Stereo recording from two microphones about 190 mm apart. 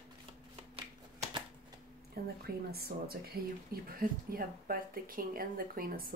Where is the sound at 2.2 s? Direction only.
55° right (ahead or behind).